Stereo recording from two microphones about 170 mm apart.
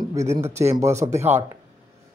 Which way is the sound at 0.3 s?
40° right (ahead or behind).